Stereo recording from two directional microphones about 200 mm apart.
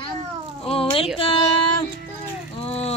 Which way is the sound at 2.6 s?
30° left (ahead or behind).